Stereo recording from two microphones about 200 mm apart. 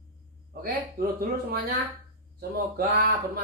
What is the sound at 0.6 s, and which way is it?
Speech, 45° right (ahead or behind).